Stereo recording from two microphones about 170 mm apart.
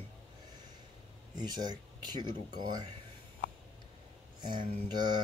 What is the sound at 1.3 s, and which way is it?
Speech, 25° right (ahead or behind).